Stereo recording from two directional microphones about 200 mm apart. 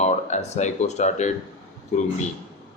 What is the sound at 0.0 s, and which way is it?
Speech, 35° left (ahead or behind).